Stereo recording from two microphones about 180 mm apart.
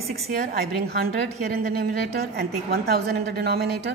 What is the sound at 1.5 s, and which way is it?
A woman's voice, 60° right (ahead or behind).